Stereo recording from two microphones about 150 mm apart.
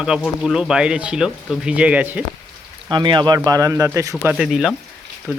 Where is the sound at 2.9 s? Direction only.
30° right (ahead or behind).